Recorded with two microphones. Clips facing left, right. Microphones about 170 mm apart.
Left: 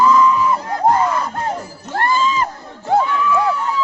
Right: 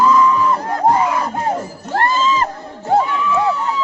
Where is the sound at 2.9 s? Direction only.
Centre (ahead or behind).